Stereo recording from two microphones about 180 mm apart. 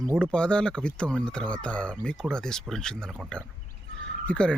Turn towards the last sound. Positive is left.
turn(degrees=5)  # may be behind; listen again after turning